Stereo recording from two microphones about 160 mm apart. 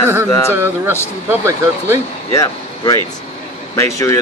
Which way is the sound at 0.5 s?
15° right (ahead or behind).